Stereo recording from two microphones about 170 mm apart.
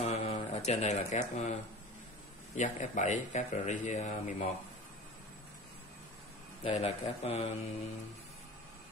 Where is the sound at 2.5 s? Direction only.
45° left (ahead or behind).